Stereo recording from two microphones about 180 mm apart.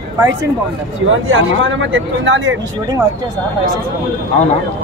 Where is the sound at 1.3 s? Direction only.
90° right.